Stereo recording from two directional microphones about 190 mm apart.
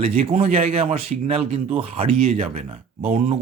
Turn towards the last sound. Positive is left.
turn(degrees=-35)  # may be behind; listen again after turning